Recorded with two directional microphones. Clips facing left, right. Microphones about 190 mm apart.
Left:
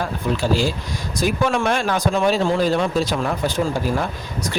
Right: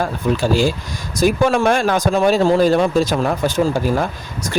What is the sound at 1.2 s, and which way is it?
Speech, 45° right (ahead or behind).